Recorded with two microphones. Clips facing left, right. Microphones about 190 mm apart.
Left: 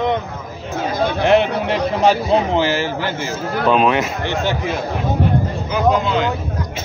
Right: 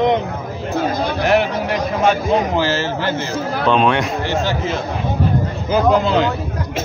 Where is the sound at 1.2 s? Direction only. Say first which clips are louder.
Left 2 dB; 25° left (ahead or behind).